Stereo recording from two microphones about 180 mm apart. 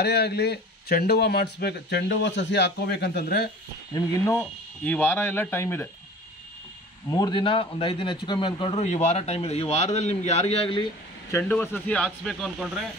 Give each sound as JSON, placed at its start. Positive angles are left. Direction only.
{"t": 0.0, "sound": "speech", "side_deg": 65}
{"t": 4.3, "sound": "speech", "side_deg": 10}
{"t": 7.1, "sound": "a man's voice", "side_deg": 20}
{"t": 11.3, "sound": "speech", "side_deg": 10}